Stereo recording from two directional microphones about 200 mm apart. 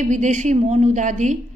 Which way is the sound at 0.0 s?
35° right (ahead or behind).